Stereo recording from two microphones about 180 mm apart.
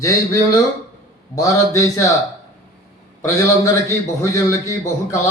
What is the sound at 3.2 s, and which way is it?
A man's voice, 15° left (ahead or behind).